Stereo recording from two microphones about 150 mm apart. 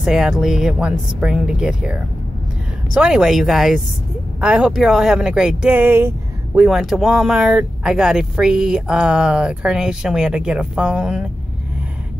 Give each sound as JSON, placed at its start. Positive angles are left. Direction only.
{"t": 0.0, "sound": "speech", "side_deg": -5}
{"t": 6.7, "sound": "speech", "side_deg": 0}